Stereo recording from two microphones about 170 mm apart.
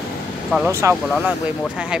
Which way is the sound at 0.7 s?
15° right (ahead or behind).